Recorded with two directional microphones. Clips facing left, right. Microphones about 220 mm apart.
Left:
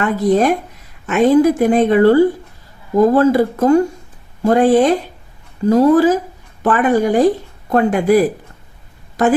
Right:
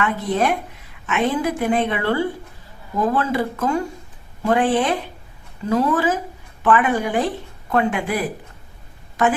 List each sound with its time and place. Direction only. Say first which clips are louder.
0.0 s speech: left 7 dB; 40° left (ahead or behind)